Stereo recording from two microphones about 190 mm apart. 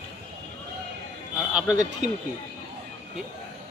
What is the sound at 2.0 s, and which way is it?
Speech, 40° right (ahead or behind).